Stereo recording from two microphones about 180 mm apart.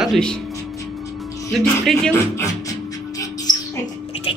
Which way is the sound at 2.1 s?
15° left (ahead or behind).